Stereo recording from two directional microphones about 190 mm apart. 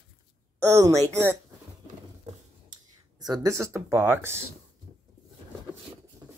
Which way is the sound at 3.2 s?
20° right (ahead or behind).